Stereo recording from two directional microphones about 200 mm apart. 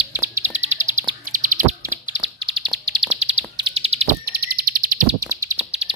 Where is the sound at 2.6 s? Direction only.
Centre (ahead or behind).